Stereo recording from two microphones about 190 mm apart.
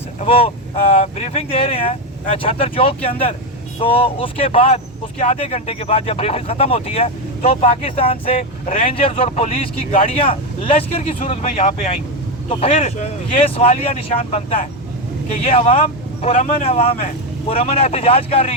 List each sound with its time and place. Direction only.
0.2 s speech: 30° left (ahead or behind)